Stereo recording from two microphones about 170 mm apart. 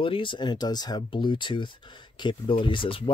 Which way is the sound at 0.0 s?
30° left (ahead or behind).